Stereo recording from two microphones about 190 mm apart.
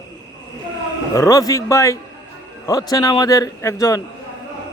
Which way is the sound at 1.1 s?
15° left (ahead or behind).